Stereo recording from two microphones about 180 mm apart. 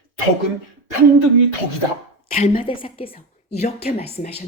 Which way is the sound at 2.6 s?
30° left (ahead or behind).